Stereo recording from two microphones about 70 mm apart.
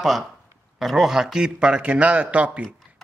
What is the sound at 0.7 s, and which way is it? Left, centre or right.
A man's voice, centre.